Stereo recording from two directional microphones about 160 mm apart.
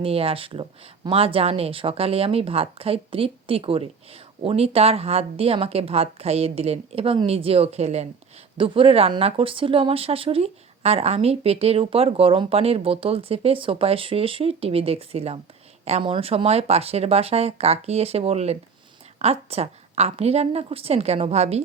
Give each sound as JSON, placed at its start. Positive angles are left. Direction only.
{"t": 0.0, "sound": "speech", "side_deg": -35}